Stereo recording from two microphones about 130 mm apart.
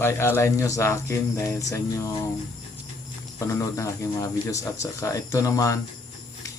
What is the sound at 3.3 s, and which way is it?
Speech, 25° left (ahead or behind).